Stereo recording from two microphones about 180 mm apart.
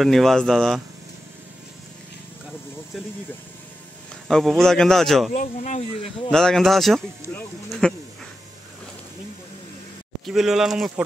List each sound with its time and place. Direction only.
0.0 s speech: centre (ahead or behind)
4.3 s speech: centre (ahead or behind)
5.3 s speech: 40° left (ahead or behind)
6.3 s speech: centre (ahead or behind)
10.2 s speech: centre (ahead or behind)